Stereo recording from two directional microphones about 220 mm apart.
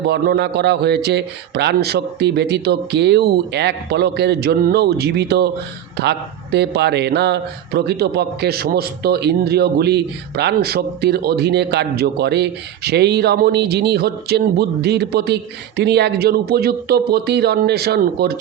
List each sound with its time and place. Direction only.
0.1 s speech: 50° right (ahead or behind)